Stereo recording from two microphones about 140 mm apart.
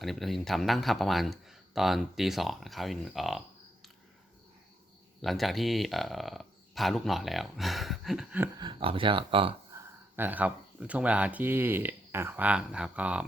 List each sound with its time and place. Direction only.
0.0 s speech: centre (ahead or behind)
5.2 s speech: centre (ahead or behind)
8.5 s speech: 35° right (ahead or behind)
9.7 s speech: 15° right (ahead or behind)